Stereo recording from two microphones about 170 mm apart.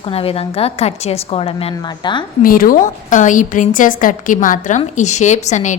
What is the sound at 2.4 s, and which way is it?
A woman's voice, 55° left (ahead or behind).